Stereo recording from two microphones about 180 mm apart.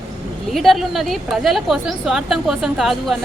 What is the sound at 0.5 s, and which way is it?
A woman's voice, centre (ahead or behind).